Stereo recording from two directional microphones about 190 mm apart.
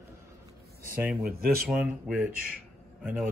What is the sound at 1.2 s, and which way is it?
Speech, 55° right (ahead or behind).